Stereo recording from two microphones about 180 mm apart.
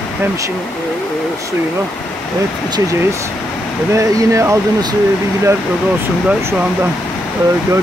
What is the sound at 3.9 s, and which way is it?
Speech, 15° right (ahead or behind).